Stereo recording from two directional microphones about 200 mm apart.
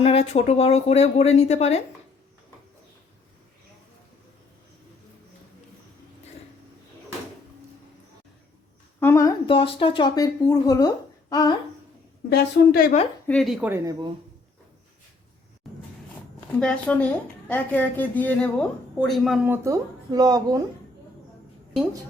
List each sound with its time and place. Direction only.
0.0 s speech: 30° left (ahead or behind)
9.0 s a woman's voice: 15° left (ahead or behind)
9.5 s speech: 25° left (ahead or behind)
12.3 s a woman's voice: 50° left (ahead or behind)
13.2 s a woman's voice: centre (ahead or behind)
15.6 s a sound: centre (ahead or behind)
16.5 s a woman's voice: 5° left (ahead or behind)
19.5 s speech: 15° right (ahead or behind)